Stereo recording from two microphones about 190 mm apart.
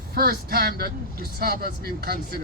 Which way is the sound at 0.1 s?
55° right (ahead or behind).